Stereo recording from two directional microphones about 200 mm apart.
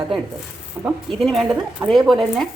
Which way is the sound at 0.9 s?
Centre (ahead or behind).